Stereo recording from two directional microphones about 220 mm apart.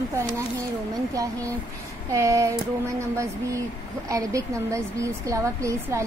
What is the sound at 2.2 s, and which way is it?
Speech, 15° right (ahead or behind).